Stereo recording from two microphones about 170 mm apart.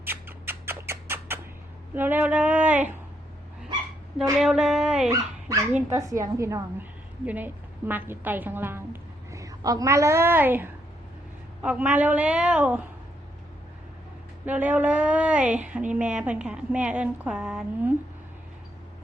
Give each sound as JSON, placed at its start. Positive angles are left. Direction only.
{"t": 0.0, "sound": "a sound", "side_deg": -10}
{"t": 2.0, "sound": "a woman's voice", "side_deg": -10}
{"t": 4.2, "sound": "speech", "side_deg": 0}
{"t": 5.9, "sound": "a woman's voice", "side_deg": -20}
{"t": 14.4, "sound": "a woman's voice", "side_deg": -10}